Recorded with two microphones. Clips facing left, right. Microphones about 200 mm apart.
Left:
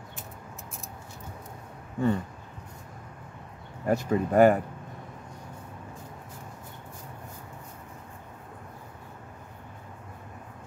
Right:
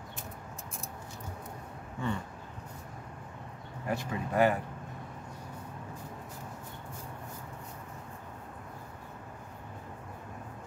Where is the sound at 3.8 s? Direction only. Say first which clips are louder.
Left 9 dB; 45° left (ahead or behind).